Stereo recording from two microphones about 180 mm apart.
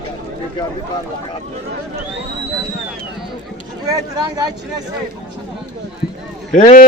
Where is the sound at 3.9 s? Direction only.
20° right (ahead or behind).